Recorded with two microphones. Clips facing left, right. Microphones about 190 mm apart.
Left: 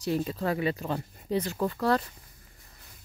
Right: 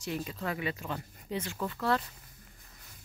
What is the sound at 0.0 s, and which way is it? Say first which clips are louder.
Speech: left 7 dB; 35° left (ahead or behind).